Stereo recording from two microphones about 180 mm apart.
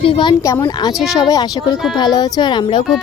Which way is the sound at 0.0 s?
30° left (ahead or behind).